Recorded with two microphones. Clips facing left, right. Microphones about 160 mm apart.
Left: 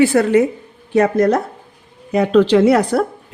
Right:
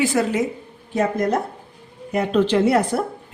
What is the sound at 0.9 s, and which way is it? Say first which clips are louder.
Speech: left 6 dB; 85° left.